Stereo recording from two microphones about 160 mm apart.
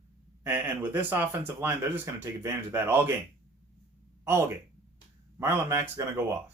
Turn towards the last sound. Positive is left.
turn(degrees=-20)  # may be behind; listen again after turning